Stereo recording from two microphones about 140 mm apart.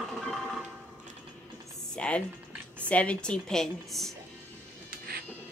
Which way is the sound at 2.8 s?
10° left (ahead or behind).